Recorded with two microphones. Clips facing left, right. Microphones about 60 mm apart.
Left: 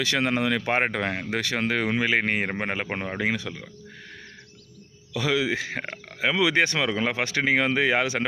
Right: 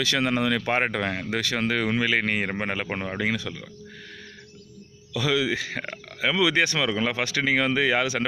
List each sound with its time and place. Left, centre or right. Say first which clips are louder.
0.0 s speech: even; left
5.1 s speech: even; left